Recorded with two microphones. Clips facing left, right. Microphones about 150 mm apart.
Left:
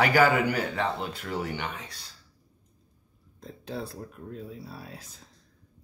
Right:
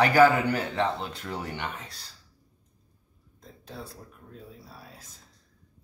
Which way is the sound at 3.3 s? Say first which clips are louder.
Left 7 dB; 75° left (ahead or behind).